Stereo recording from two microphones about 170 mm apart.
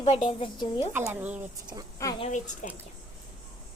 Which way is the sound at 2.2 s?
45° left (ahead or behind).